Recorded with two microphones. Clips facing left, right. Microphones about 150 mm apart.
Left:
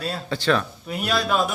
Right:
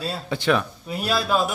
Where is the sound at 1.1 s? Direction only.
5° right (ahead or behind).